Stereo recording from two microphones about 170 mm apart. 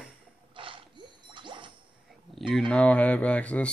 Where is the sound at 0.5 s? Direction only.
30° right (ahead or behind).